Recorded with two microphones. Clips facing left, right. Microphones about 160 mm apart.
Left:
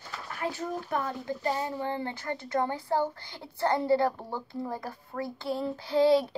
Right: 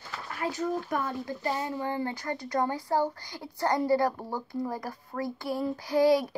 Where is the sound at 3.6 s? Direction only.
25° left (ahead or behind).